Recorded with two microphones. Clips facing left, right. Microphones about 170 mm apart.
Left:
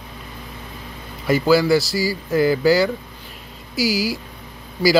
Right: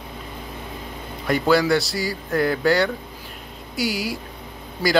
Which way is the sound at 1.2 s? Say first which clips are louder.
Left 3 dB; centre (ahead or behind).